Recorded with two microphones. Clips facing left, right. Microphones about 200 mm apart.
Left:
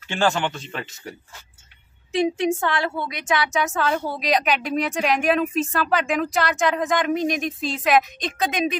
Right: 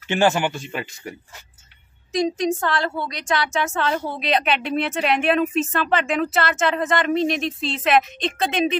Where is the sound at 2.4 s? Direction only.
10° left (ahead or behind).